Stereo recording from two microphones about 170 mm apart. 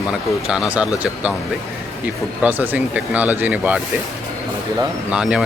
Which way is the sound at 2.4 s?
10° right (ahead or behind).